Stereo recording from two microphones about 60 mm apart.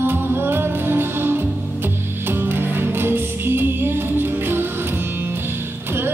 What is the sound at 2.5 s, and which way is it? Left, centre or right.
Music, right.